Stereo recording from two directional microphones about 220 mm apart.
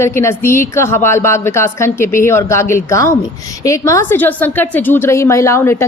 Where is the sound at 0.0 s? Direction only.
10° left (ahead or behind).